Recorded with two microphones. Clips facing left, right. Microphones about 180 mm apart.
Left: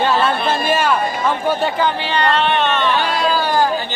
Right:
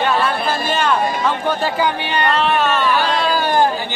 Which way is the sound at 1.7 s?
15° right (ahead or behind).